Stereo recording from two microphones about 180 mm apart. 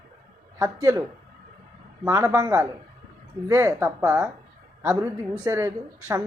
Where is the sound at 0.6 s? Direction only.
15° right (ahead or behind).